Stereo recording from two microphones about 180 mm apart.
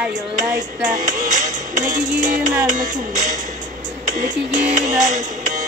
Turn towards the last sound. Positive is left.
turn(degrees=-45)  # may be behind; listen again after turning